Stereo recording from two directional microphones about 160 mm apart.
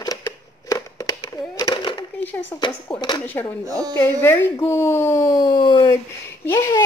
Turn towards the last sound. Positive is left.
turn(degrees=15)  # may be behind; listen again after turning